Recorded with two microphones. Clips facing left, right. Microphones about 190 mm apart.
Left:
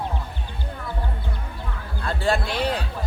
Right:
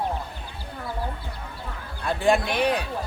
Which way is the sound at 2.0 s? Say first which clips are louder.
Right 2 dB; 15° right (ahead or behind).